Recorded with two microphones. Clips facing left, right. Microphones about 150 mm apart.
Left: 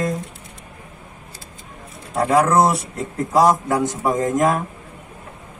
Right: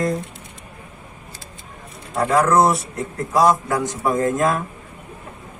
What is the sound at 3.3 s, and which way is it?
A man's voice, 20° left (ahead or behind).